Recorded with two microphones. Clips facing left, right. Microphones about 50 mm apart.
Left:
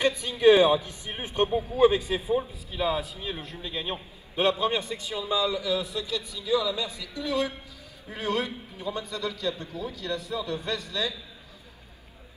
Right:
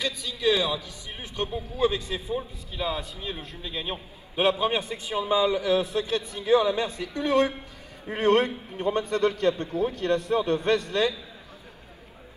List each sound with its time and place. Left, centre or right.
0.0 s a man's voice: left; by 5.2 s right
5.2 s a man's voice: right